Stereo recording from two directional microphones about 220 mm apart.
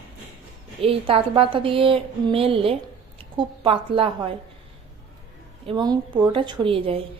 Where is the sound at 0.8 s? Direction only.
25° right (ahead or behind).